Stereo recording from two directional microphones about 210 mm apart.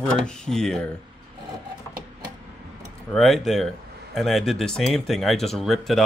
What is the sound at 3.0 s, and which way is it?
Speech, centre (ahead or behind).